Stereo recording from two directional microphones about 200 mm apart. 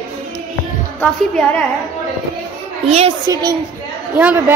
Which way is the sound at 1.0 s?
5° left (ahead or behind).